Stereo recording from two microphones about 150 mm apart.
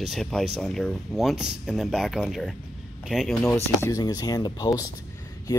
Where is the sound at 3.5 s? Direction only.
20° left (ahead or behind).